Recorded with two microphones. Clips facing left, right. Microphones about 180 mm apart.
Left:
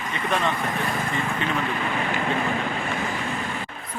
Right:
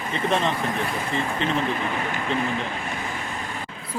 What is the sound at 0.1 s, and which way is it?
Speech, 30° right (ahead or behind).